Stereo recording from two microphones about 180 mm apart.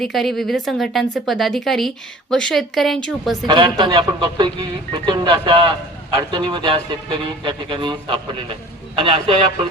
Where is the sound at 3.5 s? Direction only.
25° right (ahead or behind).